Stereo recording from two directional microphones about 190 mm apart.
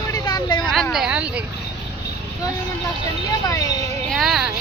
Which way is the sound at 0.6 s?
Centre (ahead or behind).